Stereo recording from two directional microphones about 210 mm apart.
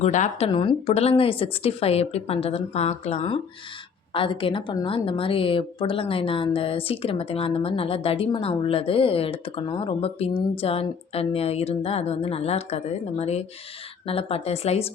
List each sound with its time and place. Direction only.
0.0 s a woman's voice: 35° left (ahead or behind)